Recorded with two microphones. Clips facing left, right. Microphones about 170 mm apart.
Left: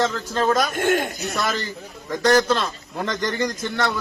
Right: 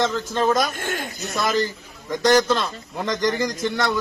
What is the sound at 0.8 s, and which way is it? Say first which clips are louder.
Speech: left 8 dB; 60° left (ahead or behind).